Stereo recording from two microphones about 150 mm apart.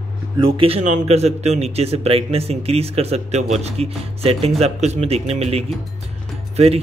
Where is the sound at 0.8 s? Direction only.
50° right (ahead or behind).